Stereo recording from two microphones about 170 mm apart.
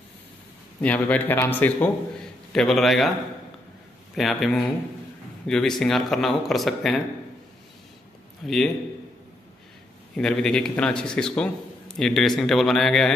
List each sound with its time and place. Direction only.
0.7 s a man's voice: 10° left (ahead or behind)
4.1 s speech: centre (ahead or behind)
8.4 s speech: centre (ahead or behind)
10.1 s speech: 5° left (ahead or behind)